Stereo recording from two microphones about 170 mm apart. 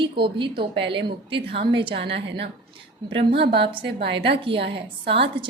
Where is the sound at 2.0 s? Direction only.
90° right.